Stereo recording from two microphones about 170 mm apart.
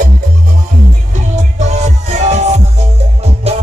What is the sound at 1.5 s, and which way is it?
Music, 40° right (ahead or behind).